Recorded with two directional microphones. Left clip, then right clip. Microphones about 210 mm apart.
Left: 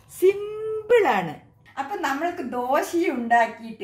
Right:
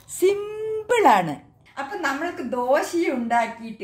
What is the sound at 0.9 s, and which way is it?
Speech, 35° right (ahead or behind).